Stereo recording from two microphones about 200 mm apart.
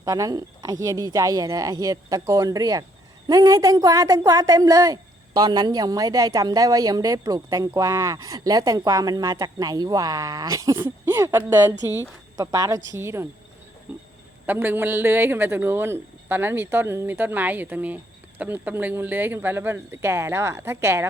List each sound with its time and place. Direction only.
0.0 s a woman's voice: 15° right (ahead or behind)
13.9 s a sound: 10° right (ahead or behind)
14.4 s a woman's voice: 10° right (ahead or behind)